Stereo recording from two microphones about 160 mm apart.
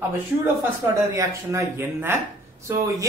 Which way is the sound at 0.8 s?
20° right (ahead or behind).